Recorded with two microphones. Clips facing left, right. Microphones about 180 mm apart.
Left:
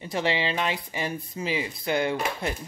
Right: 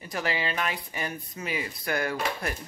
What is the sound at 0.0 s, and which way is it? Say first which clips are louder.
Speech: left 4 dB; 25° left (ahead or behind).